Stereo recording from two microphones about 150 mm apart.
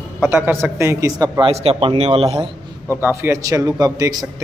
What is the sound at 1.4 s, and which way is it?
A man's voice, 40° right (ahead or behind).